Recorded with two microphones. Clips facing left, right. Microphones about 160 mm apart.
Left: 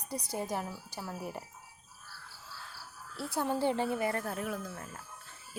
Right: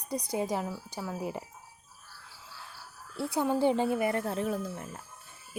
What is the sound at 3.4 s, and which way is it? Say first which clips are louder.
Speech: right 4 dB; 15° right (ahead or behind).